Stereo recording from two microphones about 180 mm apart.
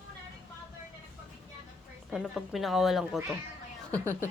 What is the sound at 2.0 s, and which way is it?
A woman's voice, centre (ahead or behind).